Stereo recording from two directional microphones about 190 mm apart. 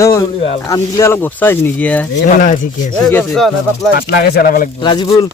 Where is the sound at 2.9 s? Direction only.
10° left (ahead or behind).